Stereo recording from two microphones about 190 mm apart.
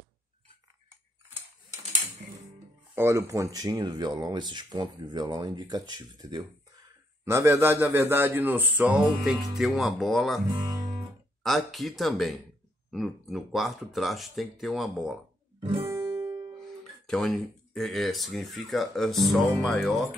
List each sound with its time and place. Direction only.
2.9 s speech: 15° right (ahead or behind)
10.5 s guitar: 20° right (ahead or behind)
11.4 s speech: centre (ahead or behind)
15.9 s music: 15° right (ahead or behind)
17.0 s speech: centre (ahead or behind)